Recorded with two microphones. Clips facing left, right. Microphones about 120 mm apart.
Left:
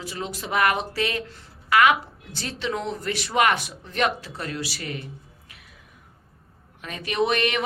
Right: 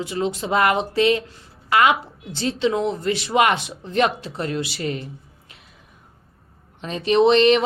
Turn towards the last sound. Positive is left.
turn(degrees=-25)  # may be behind; listen again after turning